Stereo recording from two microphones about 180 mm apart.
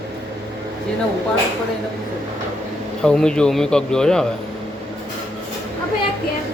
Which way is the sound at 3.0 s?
5° left (ahead or behind).